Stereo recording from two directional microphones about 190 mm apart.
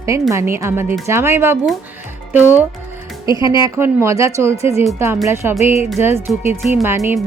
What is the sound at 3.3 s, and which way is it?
Speech, 20° right (ahead or behind).